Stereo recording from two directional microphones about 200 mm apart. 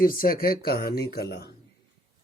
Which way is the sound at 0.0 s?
45° left (ahead or behind).